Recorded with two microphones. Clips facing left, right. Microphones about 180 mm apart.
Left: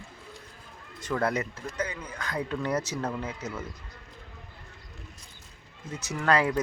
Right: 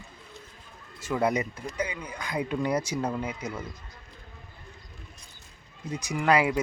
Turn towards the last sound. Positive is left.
turn(degrees=-10)  # may be behind; listen again after turning